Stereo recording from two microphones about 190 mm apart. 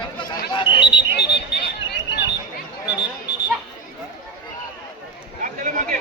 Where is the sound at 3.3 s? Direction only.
60° left (ahead or behind).